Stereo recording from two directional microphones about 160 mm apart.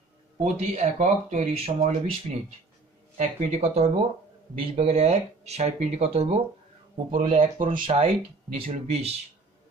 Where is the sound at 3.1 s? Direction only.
50° right (ahead or behind).